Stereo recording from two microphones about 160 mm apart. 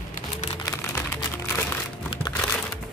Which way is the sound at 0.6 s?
20° left (ahead or behind).